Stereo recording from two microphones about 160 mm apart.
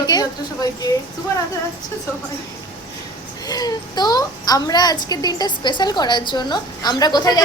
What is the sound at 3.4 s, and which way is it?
A woman's voice, 25° left (ahead or behind).